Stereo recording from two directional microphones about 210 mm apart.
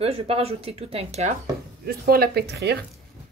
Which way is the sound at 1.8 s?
45° right (ahead or behind).